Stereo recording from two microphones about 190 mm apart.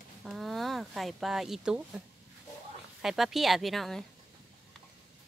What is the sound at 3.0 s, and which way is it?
Speech, centre (ahead or behind).